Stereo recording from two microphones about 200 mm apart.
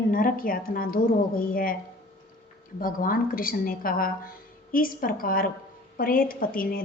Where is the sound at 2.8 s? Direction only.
45° left (ahead or behind).